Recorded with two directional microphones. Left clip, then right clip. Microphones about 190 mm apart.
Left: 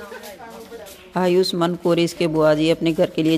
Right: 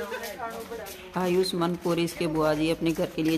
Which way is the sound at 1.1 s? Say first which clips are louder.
Left 7 dB; 30° left (ahead or behind).